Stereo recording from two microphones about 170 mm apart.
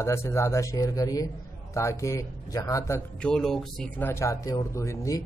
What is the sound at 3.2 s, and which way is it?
Speech, 5° left (ahead or behind).